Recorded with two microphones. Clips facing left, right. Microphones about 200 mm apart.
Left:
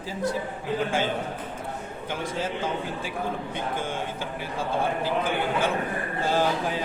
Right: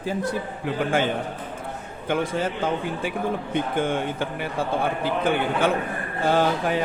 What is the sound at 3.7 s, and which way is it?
Mantra, 60° right (ahead or behind).